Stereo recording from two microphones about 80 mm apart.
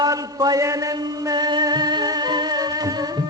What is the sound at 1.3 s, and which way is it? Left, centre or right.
Music, right.